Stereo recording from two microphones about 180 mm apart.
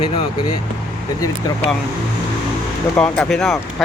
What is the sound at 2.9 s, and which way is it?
Speech, 5° left (ahead or behind).